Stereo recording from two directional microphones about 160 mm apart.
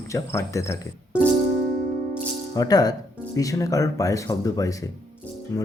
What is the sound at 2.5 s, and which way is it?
Speech, 25° left (ahead or behind).